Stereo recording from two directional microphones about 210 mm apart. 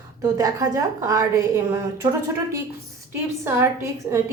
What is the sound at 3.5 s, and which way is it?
Speech, 15° right (ahead or behind).